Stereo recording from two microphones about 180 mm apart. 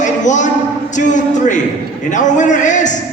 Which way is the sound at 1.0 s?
45° left (ahead or behind).